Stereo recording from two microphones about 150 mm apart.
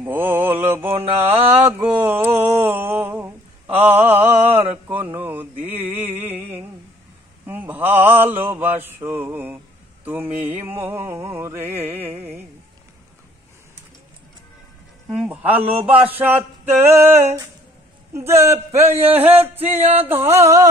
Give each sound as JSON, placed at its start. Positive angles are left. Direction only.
{"t": 0.0, "sound": "mantra", "side_deg": -15}
{"t": 1.5, "sound": "a sound", "side_deg": -15}
{"t": 7.4, "sound": "mantra", "side_deg": -10}
{"t": 10.0, "sound": "speech", "side_deg": -10}
{"t": 15.0, "sound": "speech", "side_deg": -10}
{"t": 18.1, "sound": "speech", "side_deg": -15}
{"t": 18.7, "sound": "speech", "side_deg": -45}
{"t": 19.0, "sound": "speech", "side_deg": -10}
{"t": 19.8, "sound": "speech", "side_deg": -45}
{"t": 20.1, "sound": "speech", "side_deg": -15}